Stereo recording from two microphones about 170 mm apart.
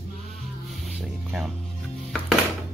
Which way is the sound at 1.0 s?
5° right (ahead or behind).